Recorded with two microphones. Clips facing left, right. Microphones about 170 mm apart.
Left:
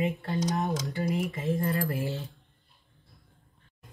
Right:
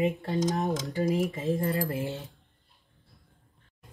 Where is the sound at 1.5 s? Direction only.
20° right (ahead or behind).